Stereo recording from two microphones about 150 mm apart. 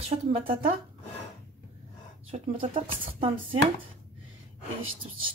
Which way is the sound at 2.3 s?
40° right (ahead or behind).